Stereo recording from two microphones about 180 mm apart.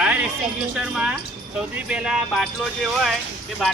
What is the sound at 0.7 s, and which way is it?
Speech, 5° right (ahead or behind).